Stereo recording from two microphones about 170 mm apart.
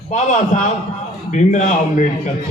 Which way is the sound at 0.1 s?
45° left (ahead or behind).